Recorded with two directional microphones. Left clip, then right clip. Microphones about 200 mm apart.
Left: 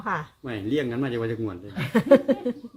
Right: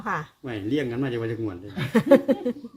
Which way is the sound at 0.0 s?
5° right (ahead or behind).